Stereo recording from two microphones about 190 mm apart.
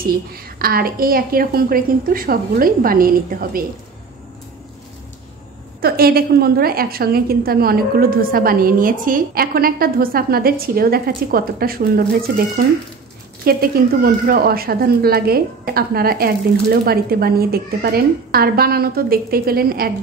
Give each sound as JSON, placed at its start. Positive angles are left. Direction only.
{"t": 0.3, "sound": "a woman's voice", "side_deg": -50}
{"t": 5.8, "sound": "a woman's voice", "side_deg": -55}